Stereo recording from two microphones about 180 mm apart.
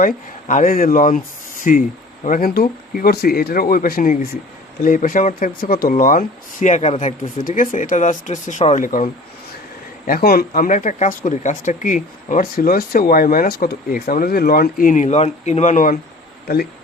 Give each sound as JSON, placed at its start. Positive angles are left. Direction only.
{"t": 0.4, "sound": "speech", "side_deg": 50}
{"t": 10.1, "sound": "speech", "side_deg": 55}